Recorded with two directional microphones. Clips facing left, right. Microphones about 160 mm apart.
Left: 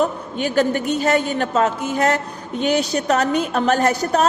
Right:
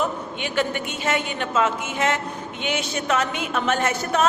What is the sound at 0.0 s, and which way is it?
A woman's voice, 40° left (ahead or behind).